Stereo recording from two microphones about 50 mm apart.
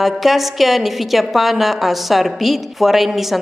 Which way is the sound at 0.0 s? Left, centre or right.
Centre.